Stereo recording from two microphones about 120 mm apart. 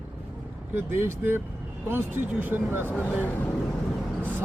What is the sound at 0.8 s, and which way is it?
Speech, 20° right (ahead or behind).